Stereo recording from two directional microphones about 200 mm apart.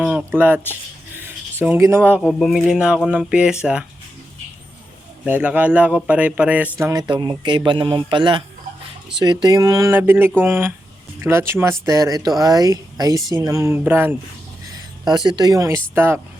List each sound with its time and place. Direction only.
0.0 s speech: 5° right (ahead or behind)
5.2 s speech: 5° right (ahead or behind)